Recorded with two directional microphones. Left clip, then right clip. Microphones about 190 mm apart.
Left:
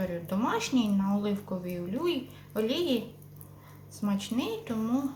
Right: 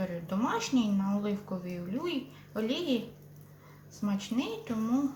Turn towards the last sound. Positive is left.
turn(degrees=10)  # may be behind; listen again after turning